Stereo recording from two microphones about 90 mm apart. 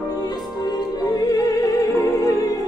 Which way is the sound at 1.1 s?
45° left (ahead or behind).